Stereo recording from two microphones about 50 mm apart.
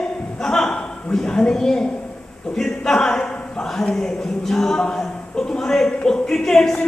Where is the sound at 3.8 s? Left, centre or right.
Centre.